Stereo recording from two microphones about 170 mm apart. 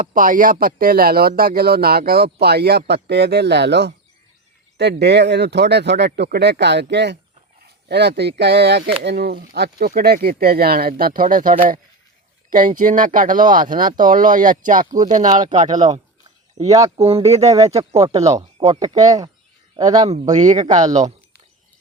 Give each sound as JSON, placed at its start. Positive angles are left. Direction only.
{"t": 0.0, "sound": "speech", "side_deg": -50}
{"t": 7.9, "sound": "speech", "side_deg": -75}
{"t": 15.7, "sound": "speech", "side_deg": -25}
{"t": 18.5, "sound": "a sound", "side_deg": -35}
{"t": 18.8, "sound": "speech", "side_deg": -20}
{"t": 20.3, "sound": "speech", "side_deg": -45}